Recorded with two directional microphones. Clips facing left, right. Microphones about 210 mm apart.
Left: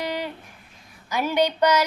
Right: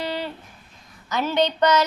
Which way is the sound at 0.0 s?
15° left (ahead or behind).